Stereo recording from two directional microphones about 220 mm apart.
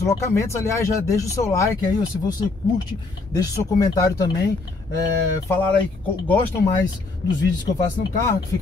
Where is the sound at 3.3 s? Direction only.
15° left (ahead or behind).